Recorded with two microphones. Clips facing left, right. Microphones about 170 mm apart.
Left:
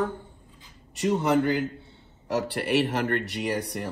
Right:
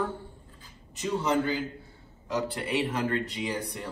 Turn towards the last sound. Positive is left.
turn(degrees=70)  # may be behind; listen again after turning